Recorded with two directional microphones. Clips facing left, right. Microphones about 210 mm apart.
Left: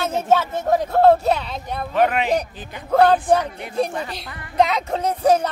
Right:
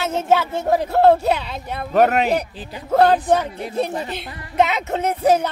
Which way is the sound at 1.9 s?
45° right (ahead or behind).